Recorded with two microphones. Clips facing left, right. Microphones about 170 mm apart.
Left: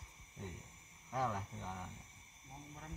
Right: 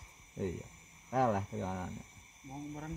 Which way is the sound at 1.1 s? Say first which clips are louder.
Right 8 dB; 70° right (ahead or behind).